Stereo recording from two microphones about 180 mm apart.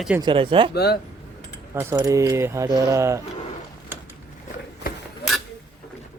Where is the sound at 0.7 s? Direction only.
65° left (ahead or behind).